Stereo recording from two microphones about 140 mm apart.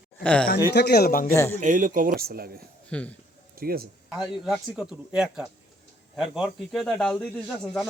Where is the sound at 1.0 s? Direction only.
80° left.